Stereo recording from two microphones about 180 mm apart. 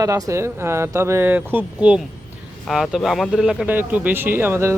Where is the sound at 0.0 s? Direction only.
20° right (ahead or behind).